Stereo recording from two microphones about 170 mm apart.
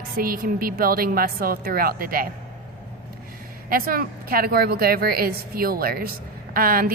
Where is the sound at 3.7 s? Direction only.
60° right (ahead or behind).